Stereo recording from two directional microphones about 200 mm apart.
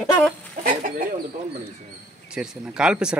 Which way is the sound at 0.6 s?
40° right (ahead or behind).